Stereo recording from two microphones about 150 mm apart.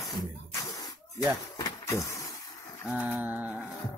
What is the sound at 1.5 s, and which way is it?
Vehicle, 25° left (ahead or behind).